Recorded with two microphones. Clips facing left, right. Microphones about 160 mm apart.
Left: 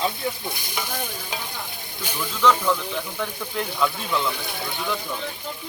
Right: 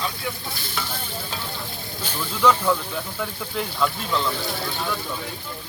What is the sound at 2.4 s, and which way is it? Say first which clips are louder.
Speech: right 1 dB; 10° right (ahead or behind).